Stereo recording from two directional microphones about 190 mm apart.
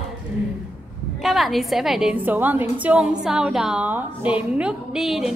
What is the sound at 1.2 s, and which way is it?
A woman's voice, centre (ahead or behind).